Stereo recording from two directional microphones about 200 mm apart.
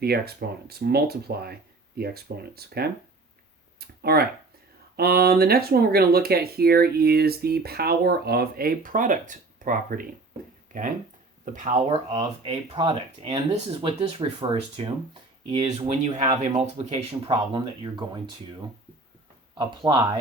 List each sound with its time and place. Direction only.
0.0 s speech: 50° right (ahead or behind)
11.9 s speech: 25° right (ahead or behind)
19.5 s speech: 20° right (ahead or behind)